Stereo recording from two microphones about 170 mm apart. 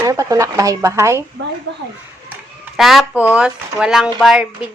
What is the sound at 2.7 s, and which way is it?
Speech, centre (ahead or behind).